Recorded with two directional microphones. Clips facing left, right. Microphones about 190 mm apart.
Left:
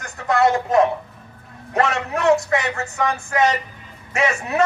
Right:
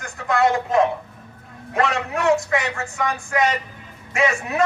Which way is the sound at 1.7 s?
35° left (ahead or behind).